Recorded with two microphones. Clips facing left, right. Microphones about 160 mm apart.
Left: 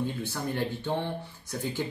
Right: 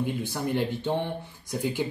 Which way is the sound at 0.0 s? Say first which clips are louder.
Right 3 dB; 15° right (ahead or behind).